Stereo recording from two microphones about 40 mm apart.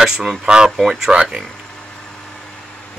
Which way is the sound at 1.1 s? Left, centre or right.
Right.